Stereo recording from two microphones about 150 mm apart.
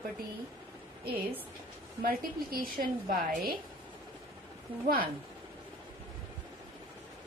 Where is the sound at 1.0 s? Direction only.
75° right (ahead or behind).